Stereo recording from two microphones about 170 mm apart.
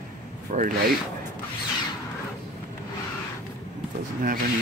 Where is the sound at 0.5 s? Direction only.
45° right (ahead or behind).